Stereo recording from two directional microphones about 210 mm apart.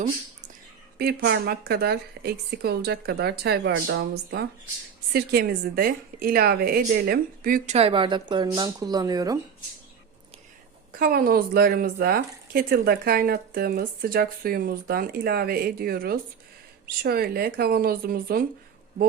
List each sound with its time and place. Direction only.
0.9 s speech: 50° right (ahead or behind)
7.8 s speech: 25° right (ahead or behind)
10.9 s speech: 45° right (ahead or behind)